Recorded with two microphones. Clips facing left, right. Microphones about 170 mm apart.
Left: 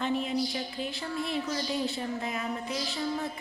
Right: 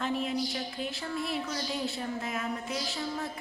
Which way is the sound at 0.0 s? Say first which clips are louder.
Left 2 dB; centre (ahead or behind).